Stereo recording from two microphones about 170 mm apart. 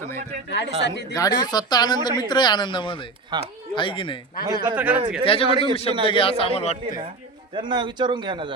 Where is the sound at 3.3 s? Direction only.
25° right (ahead or behind).